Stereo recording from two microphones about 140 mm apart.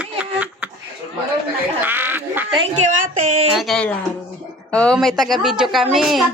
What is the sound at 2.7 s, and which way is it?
Music, 65° right (ahead or behind).